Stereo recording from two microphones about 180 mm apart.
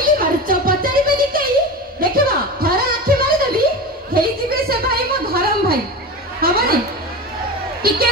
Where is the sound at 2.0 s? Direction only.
55° right (ahead or behind).